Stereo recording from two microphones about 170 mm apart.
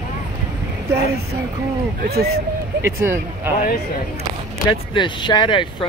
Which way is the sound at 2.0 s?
65° right (ahead or behind).